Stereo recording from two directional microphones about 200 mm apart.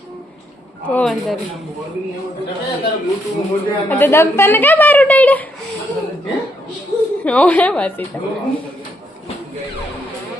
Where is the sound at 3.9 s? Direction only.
10° left (ahead or behind).